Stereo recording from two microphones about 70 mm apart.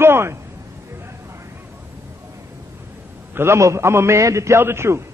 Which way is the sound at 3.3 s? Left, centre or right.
Right.